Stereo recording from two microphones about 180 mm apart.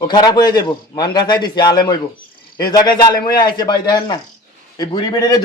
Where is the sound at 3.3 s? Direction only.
25° left (ahead or behind).